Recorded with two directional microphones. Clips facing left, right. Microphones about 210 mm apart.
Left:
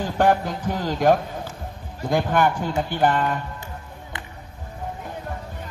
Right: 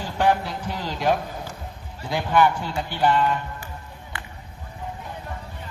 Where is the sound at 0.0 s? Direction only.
50° left (ahead or behind).